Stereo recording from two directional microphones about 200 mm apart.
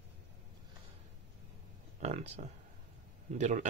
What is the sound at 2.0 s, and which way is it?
Speech, 35° right (ahead or behind).